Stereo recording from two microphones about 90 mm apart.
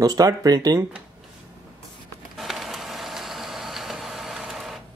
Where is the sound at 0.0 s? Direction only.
40° right (ahead or behind).